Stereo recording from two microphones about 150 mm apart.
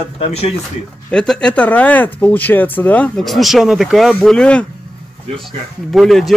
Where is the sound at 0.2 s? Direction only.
45° left (ahead or behind).